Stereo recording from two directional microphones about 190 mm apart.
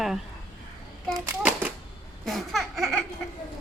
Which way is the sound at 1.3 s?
10° right (ahead or behind).